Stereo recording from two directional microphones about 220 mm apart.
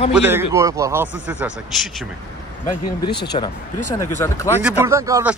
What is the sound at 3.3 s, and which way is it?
Speech, 30° left (ahead or behind).